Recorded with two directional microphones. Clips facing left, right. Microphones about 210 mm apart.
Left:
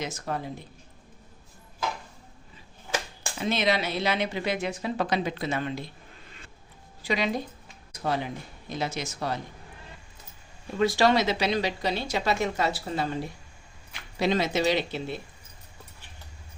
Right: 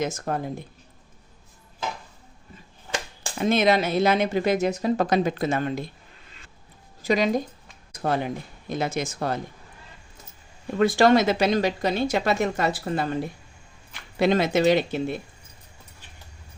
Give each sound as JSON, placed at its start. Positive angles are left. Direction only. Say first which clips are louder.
{"t": 0.0, "sound": "speech", "louder": "right 5 dB", "side_deg": -50}
{"t": 3.3, "sound": "speech", "louder": "right 6 dB", "side_deg": -50}
{"t": 7.0, "sound": "speech", "louder": "right 6 dB", "side_deg": -45}
{"t": 10.8, "sound": "speech", "louder": "right 4 dB", "side_deg": -50}
{"t": 14.2, "sound": "speech", "louder": "right 5 dB", "side_deg": -55}